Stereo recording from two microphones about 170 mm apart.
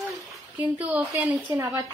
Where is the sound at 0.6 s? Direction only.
10° right (ahead or behind).